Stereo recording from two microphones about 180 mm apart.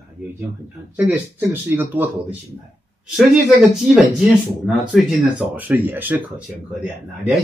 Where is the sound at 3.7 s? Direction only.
5° right (ahead or behind).